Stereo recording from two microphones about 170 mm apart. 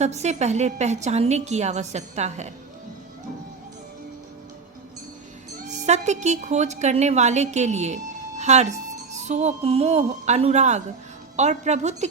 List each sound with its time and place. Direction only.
0.0 s a woman's voice: 40° right (ahead or behind)
5.6 s a woman's voice: 45° right (ahead or behind)